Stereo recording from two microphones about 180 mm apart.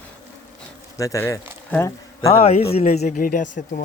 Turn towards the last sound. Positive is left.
turn(degrees=45)  # may be behind; listen again after turning